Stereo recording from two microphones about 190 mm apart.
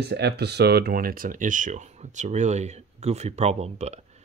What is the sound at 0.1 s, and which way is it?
Speech, 60° right (ahead or behind).